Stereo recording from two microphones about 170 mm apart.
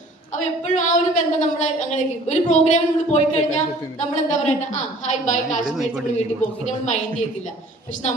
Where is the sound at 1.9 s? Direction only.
45° left (ahead or behind).